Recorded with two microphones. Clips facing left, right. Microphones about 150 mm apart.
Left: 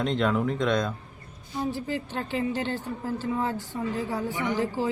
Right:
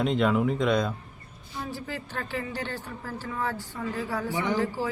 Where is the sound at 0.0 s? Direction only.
5° right (ahead or behind).